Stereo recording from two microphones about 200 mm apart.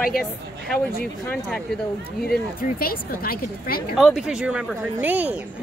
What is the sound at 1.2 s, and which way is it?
Speech, 5° left (ahead or behind).